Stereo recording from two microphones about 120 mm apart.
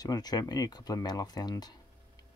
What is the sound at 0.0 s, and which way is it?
Speech, 35° left (ahead or behind).